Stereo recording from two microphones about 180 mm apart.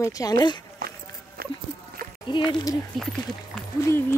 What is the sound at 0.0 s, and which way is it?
Speech, 20° left (ahead or behind).